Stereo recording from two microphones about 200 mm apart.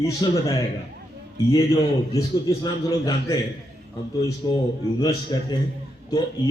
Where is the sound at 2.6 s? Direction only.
20° left (ahead or behind).